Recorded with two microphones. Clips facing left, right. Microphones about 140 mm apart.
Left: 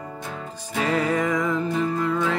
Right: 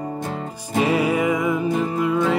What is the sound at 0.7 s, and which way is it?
Music, 10° right (ahead or behind).